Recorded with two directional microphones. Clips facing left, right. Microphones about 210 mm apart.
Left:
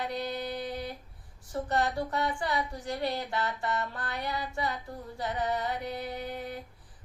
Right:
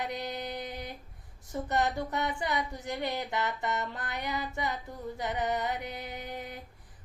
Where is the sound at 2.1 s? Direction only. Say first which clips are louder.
Left 1 dB; 20° right (ahead or behind).